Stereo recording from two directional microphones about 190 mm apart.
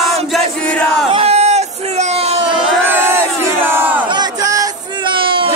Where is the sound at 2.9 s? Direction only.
15° right (ahead or behind).